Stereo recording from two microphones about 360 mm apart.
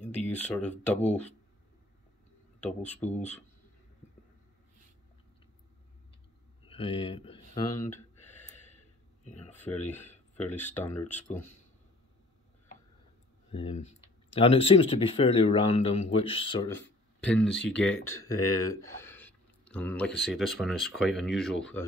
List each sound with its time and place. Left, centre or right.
0.3 s speech: centre
0.9 s speech: centre
2.6 s speech: centre
3.0 s speech: centre
6.7 s a sound: centre
9.4 s speech: centre
13.5 s speech: centre